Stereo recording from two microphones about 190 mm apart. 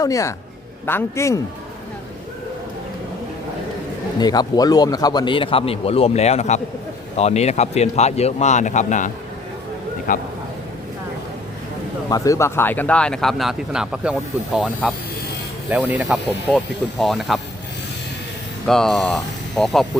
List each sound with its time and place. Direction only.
0.0 s a man's voice: 15° left (ahead or behind)
4.2 s a man's voice: 20° left (ahead or behind); by 10.2 s 45° left (ahead or behind)
12.0 s speech: 20° left (ahead or behind); by 17.4 s centre (ahead or behind)
18.6 s speech: centre (ahead or behind)